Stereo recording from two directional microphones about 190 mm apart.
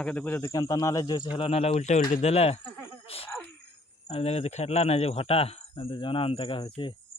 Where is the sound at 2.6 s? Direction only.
10° left (ahead or behind).